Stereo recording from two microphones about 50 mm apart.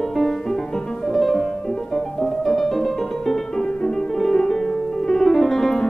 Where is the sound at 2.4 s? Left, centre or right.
Centre.